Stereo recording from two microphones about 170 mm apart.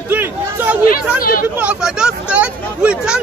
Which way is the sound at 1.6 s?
5° right (ahead or behind).